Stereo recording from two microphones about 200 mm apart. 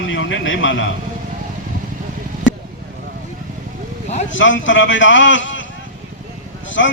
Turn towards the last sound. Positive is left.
turn(degrees=65)  # may be behind; listen again after turning